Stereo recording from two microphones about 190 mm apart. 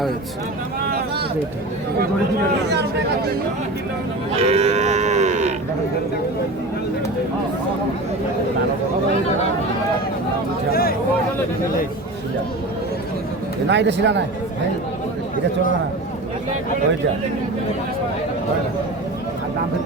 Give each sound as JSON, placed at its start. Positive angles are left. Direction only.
{"t": 2.6, "sound": "speech", "side_deg": -65}
{"t": 4.4, "sound": "cattle", "side_deg": -30}
{"t": 10.7, "sound": "speech", "side_deg": 50}
{"t": 13.7, "sound": "speech", "side_deg": -65}